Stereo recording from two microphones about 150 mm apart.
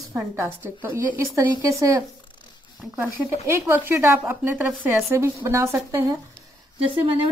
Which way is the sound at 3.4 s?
15° right (ahead or behind).